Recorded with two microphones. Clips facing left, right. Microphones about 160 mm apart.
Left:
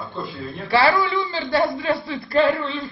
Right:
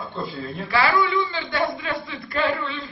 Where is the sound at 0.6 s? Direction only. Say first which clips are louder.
Left 3 dB; 30° left (ahead or behind).